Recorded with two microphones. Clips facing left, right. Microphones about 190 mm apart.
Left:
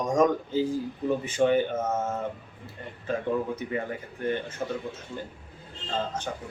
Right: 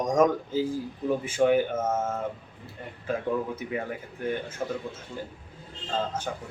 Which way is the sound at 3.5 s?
5° right (ahead or behind).